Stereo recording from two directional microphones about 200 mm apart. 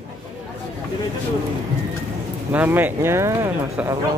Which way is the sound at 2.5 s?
10° right (ahead or behind).